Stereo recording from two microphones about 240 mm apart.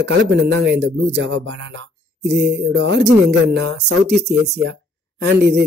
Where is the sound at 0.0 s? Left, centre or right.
Right.